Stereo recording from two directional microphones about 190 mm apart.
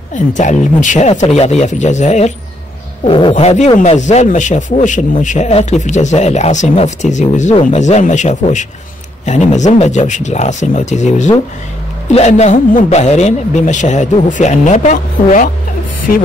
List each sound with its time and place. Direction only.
0.1 s speech: 40° left (ahead or behind)